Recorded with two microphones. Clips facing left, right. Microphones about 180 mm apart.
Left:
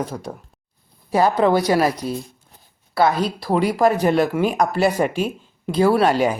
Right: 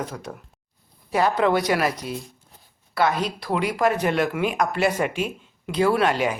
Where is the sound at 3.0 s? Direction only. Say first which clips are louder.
Left 4 dB; 35° left (ahead or behind).